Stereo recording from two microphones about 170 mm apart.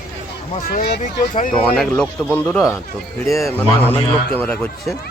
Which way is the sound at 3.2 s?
Centre (ahead or behind).